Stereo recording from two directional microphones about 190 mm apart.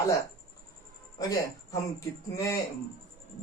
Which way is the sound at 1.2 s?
20° left (ahead or behind).